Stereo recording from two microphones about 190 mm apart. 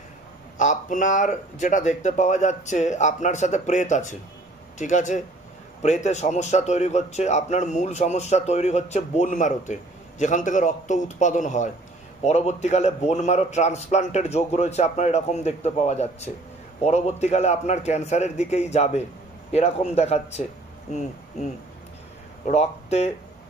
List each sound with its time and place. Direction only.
0.6 s a man's voice: 40° left (ahead or behind)
22.5 s a man's voice: 35° left (ahead or behind)